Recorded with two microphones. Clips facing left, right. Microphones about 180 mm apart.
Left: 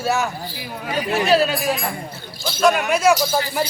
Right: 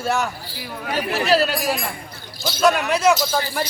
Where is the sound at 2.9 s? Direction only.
10° left (ahead or behind).